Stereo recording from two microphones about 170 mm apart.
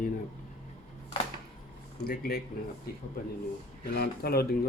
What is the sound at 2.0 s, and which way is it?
Speech, 60° left (ahead or behind).